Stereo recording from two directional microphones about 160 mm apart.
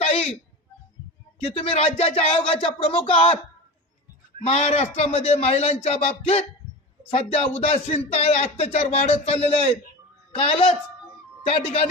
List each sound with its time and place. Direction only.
0.0 s a sound: 35° left (ahead or behind)
1.5 s a man's voice: 35° left (ahead or behind)
4.4 s a man's voice: 40° left (ahead or behind)
11.4 s a man's voice: 40° left (ahead or behind)